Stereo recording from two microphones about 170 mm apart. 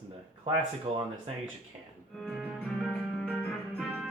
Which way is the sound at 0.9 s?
30° right (ahead or behind).